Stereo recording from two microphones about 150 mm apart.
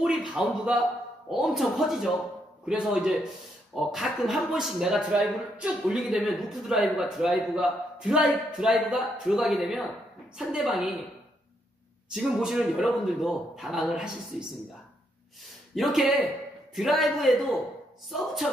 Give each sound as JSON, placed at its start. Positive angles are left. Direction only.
{"t": 0.0, "sound": "a man's voice", "side_deg": -5}
{"t": 12.1, "sound": "a man's voice", "side_deg": -5}
{"t": 15.7, "sound": "a man's voice", "side_deg": 0}